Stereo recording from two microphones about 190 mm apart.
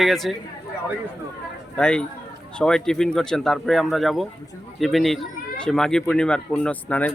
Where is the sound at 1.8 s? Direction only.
5° left (ahead or behind).